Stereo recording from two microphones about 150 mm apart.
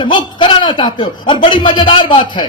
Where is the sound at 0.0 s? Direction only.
30° left (ahead or behind).